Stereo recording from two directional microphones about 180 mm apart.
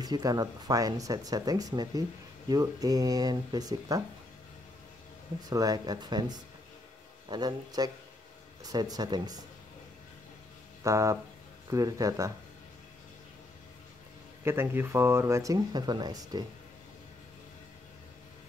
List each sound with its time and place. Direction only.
0.0 s speech: 20° right (ahead or behind)
5.5 s speech: 20° right (ahead or behind)
10.8 s speech: 15° right (ahead or behind)
14.4 s speech: 15° right (ahead or behind)